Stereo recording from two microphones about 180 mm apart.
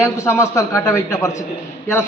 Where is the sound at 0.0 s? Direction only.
15° left (ahead or behind).